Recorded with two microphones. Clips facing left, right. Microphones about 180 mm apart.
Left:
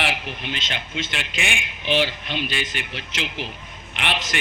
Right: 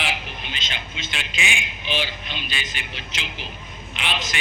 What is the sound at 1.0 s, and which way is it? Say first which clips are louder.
A man's voice: left 3 dB; 60° left (ahead or behind).